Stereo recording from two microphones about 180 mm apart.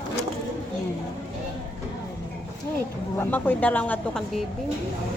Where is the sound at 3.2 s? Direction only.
10° left (ahead or behind).